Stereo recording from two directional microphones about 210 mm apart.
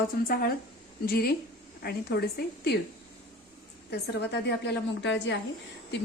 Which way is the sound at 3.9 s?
50° left (ahead or behind).